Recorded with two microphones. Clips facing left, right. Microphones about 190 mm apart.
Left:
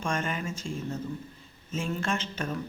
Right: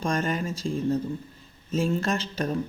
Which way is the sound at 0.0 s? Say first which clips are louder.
Right 4 dB; 35° right (ahead or behind).